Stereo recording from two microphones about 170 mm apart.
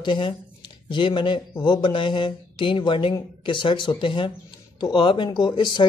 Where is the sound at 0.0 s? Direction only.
30° left (ahead or behind).